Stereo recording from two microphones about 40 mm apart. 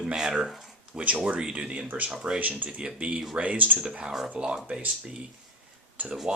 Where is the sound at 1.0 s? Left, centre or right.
Right; by 2.4 s centre.